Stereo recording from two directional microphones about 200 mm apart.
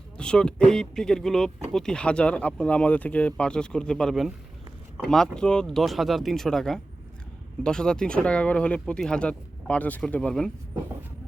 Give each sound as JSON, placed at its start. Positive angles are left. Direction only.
{"t": 0.2, "sound": "speech", "side_deg": 5}